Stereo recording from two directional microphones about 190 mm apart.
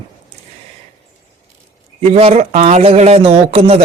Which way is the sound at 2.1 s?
35° right (ahead or behind).